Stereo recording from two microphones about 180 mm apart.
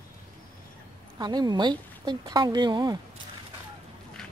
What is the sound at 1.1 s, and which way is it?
Speech, 20° right (ahead or behind).